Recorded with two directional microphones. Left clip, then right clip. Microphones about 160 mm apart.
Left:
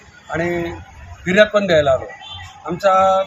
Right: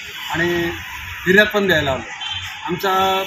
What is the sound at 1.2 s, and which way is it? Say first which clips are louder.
Speech: even; 30° left (ahead or behind).